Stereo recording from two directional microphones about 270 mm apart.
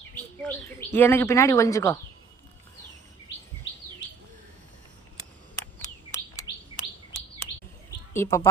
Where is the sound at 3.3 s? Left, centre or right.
Left.